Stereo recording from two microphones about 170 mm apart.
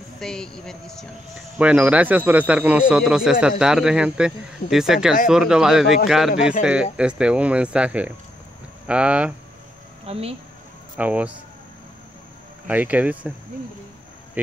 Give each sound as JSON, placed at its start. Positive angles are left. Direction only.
{"t": 0.2, "sound": "speech", "side_deg": 5}
{"t": 10.0, "sound": "speech", "side_deg": -35}
{"t": 11.0, "sound": "speech", "side_deg": -10}
{"t": 12.6, "sound": "speech", "side_deg": -10}